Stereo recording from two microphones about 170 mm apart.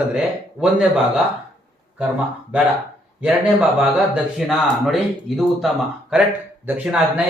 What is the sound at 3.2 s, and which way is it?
A man's voice, 5° right (ahead or behind).